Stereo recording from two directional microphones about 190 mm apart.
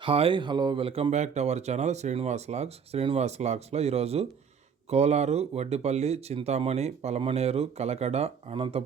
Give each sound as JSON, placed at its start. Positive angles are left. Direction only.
{"t": 0.0, "sound": "speech", "side_deg": -30}